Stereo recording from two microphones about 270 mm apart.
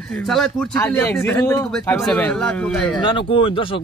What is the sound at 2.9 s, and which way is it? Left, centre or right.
Speech, centre.